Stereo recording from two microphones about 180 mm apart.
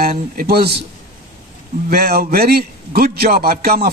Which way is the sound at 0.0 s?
55° right (ahead or behind).